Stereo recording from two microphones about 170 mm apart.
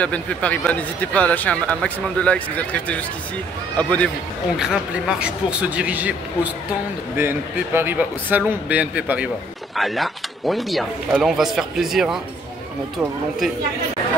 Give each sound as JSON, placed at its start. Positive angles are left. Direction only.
{"t": 0.0, "sound": "speech", "side_deg": 10}
{"t": 4.6, "sound": "a man's voice", "side_deg": -5}